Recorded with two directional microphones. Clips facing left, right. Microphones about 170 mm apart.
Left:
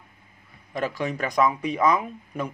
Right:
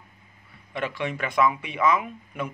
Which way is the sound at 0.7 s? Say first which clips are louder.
Left 2 dB; 40° left (ahead or behind).